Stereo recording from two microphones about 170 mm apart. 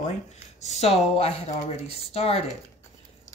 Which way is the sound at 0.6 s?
40° left (ahead or behind).